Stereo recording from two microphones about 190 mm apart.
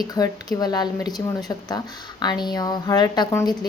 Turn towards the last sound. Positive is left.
turn(degrees=20)  # may be behind; listen again after turning